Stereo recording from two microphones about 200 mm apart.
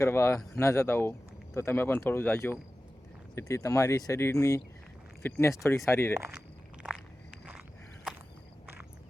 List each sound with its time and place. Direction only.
0.0 s speech: 15° left (ahead or behind)
6.1 s speech: 5° right (ahead or behind)
6.8 s walk: 5° right (ahead or behind)